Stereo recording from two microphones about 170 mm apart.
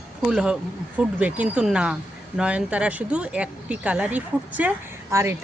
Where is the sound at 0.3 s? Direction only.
5° right (ahead or behind).